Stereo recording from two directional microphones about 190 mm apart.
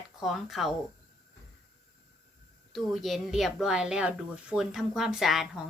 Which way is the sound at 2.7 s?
Centre (ahead or behind).